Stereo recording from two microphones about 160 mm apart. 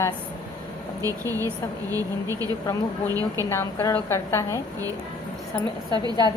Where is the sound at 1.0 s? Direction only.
20° right (ahead or behind).